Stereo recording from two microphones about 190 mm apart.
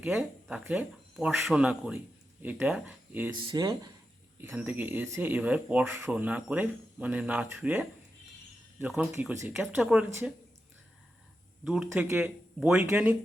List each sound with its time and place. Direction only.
0.0 s speech: 10° right (ahead or behind)
3.5 s speech: 20° right (ahead or behind)
4.4 s speech: 10° right (ahead or behind)
11.6 s speech: centre (ahead or behind)